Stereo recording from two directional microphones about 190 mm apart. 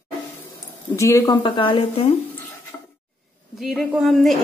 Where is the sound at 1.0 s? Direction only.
15° left (ahead or behind).